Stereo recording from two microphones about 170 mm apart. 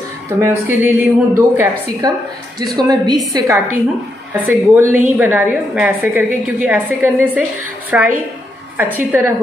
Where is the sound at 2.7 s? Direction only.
25° right (ahead or behind).